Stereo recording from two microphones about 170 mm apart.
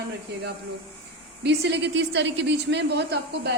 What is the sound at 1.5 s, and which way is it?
A woman's voice, 90° right.